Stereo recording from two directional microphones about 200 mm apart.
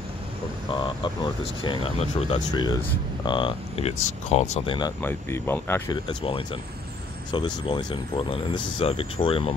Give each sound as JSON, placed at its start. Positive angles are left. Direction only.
{"t": 0.7, "sound": "speech", "side_deg": 25}
{"t": 2.5, "sound": "speech", "side_deg": 20}
{"t": 5.0, "sound": "speech", "side_deg": 10}
{"t": 6.0, "sound": "speech", "side_deg": 25}